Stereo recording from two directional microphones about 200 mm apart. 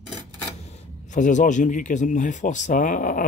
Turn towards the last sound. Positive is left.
turn(degrees=40)  # may be behind; listen again after turning